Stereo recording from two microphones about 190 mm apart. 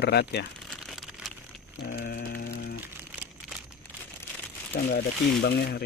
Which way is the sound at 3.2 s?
5° right (ahead or behind).